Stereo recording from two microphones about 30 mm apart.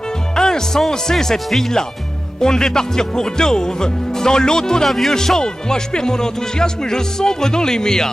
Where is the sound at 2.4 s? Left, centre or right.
Left.